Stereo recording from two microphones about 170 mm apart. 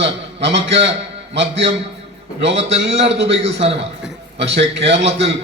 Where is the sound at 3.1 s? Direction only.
90° right.